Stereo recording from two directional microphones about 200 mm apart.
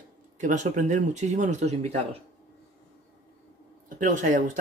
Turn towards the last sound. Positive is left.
turn(degrees=-40)  # may be behind; listen again after turning